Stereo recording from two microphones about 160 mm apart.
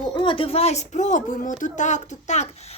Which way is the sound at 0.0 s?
30° left (ahead or behind).